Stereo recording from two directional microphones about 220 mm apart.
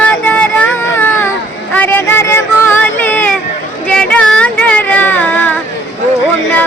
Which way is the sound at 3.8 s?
5° left (ahead or behind).